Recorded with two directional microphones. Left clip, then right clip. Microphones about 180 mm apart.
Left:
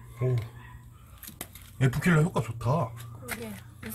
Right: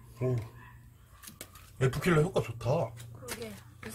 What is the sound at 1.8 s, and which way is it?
Speech, 25° right (ahead or behind).